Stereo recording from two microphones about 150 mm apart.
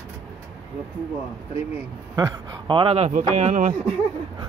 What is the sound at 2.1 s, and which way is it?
Speech, 25° right (ahead or behind).